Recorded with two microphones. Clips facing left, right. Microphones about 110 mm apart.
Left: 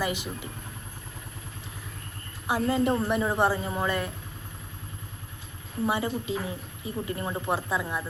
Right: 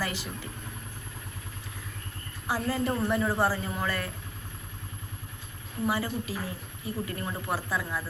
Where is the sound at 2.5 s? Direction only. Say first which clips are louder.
Left 4 dB; 20° left (ahead or behind).